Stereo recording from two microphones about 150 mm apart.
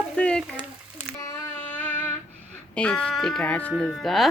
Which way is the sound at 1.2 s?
15° left (ahead or behind).